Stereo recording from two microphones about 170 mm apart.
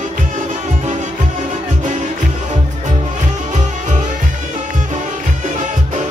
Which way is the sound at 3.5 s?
45° right (ahead or behind).